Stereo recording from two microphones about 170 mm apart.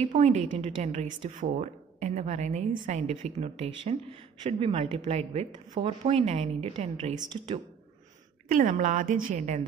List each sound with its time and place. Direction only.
0.0 s speech: 40° right (ahead or behind)
8.5 s a woman's voice: 50° right (ahead or behind)